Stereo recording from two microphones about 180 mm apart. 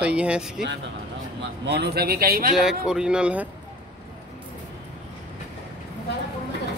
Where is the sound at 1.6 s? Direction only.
65° right (ahead or behind).